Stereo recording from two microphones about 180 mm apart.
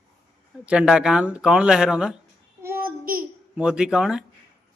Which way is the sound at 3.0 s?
50° right (ahead or behind).